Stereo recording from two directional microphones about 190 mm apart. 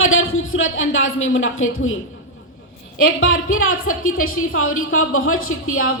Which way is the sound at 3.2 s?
90° left.